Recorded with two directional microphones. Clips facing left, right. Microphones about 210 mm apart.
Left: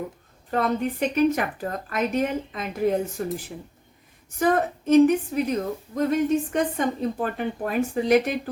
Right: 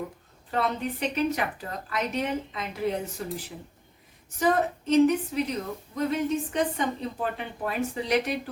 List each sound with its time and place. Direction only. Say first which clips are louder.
0.5 s a woman's voice: left 4 dB; 50° left (ahead or behind)